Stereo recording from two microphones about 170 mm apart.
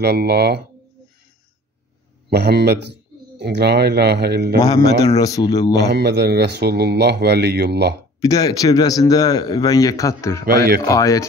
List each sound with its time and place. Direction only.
0.0 s speech: 70° right (ahead or behind)
2.2 s speech: 75° right (ahead or behind)
5.0 s a man's voice: 20° left (ahead or behind)
5.8 s speech: 75° right (ahead or behind)
8.2 s a man's voice: 20° left (ahead or behind)
10.4 s speech: 60° right (ahead or behind)
10.9 s a man's voice: 20° left (ahead or behind)